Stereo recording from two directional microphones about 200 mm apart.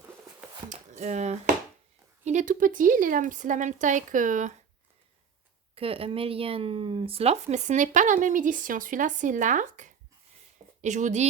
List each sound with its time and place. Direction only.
0.7 s speech: 35° right (ahead or behind)
5.7 s speech: 30° right (ahead or behind)